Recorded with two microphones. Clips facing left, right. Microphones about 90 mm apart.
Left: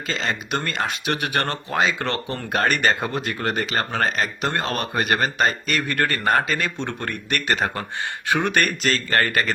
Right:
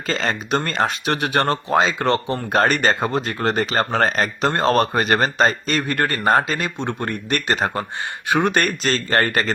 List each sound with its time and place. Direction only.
0.1 s speech: 40° right (ahead or behind)
4.4 s speech: 30° right (ahead or behind)